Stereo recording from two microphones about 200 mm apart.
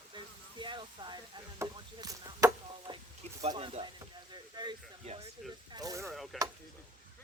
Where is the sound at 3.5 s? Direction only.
25° right (ahead or behind).